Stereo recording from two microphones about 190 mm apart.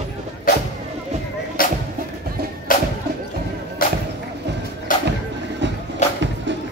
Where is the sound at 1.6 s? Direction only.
45° left (ahead or behind).